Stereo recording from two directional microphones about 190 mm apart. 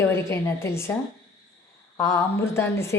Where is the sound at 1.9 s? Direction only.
15° left (ahead or behind).